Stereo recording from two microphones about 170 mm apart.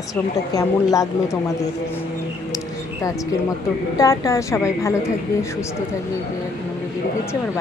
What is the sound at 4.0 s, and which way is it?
Speech, 20° left (ahead or behind).